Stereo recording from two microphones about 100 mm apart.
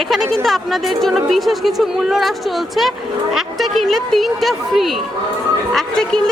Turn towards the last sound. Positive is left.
turn(degrees=5)  # may be behind; listen again after turning